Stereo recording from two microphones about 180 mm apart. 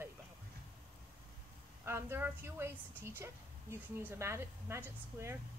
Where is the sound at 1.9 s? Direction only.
15° right (ahead or behind).